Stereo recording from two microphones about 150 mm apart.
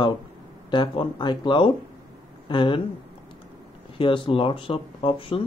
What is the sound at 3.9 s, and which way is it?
Speech, 35° left (ahead or behind).